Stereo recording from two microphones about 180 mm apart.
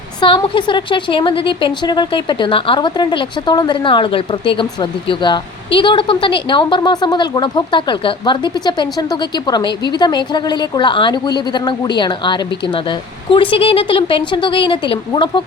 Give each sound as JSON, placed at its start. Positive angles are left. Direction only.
{"t": 0.2, "sound": "a woman's voice", "side_deg": 25}